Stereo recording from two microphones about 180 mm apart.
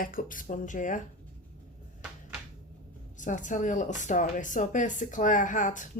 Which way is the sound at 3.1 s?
45° left (ahead or behind).